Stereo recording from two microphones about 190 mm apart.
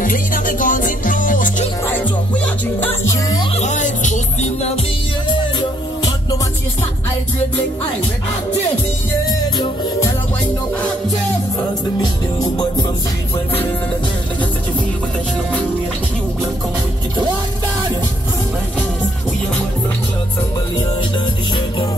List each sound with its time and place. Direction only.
0.0 s music: 45° left (ahead or behind)
3.5 s music: 40° left (ahead or behind)
9.6 s music: 15° left (ahead or behind)